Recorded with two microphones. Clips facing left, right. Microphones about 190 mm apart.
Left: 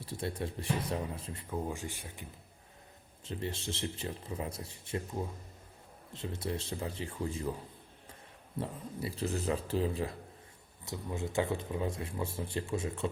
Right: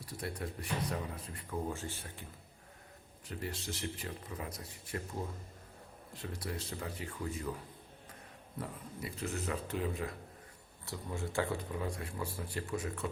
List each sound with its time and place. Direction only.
0.0 s speech: 25° left (ahead or behind)
1.5 s speech: 15° left (ahead or behind)
3.2 s speech: 25° left (ahead or behind)
8.5 s speech: 30° left (ahead or behind)
10.8 s speech: 20° left (ahead or behind)